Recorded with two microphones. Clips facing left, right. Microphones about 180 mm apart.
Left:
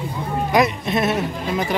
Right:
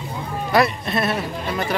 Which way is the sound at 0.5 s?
15° left (ahead or behind).